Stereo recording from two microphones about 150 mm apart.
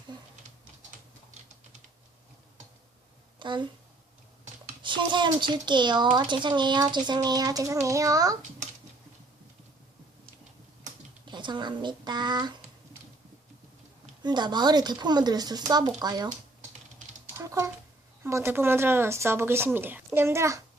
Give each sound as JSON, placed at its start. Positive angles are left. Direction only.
{"t": 3.3, "sound": "speech", "side_deg": -30}
{"t": 4.8, "sound": "a child's voice", "side_deg": -30}
{"t": 11.3, "sound": "speech", "side_deg": -30}
{"t": 14.2, "sound": "a child's voice", "side_deg": -30}
{"t": 17.3, "sound": "a sound", "side_deg": -20}
{"t": 18.2, "sound": "speech", "side_deg": -15}